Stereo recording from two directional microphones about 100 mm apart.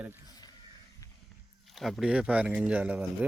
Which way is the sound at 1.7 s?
Centre (ahead or behind).